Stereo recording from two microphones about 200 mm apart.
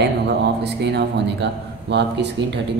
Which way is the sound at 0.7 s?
60° right (ahead or behind).